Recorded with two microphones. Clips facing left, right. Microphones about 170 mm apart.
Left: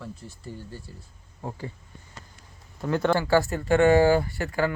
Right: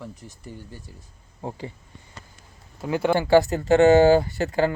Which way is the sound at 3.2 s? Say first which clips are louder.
Right 5 dB; 20° right (ahead or behind).